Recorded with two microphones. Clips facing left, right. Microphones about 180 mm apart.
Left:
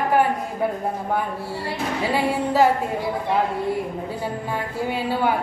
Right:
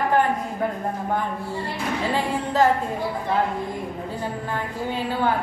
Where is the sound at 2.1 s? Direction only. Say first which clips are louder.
Left 3 dB; 10° left (ahead or behind).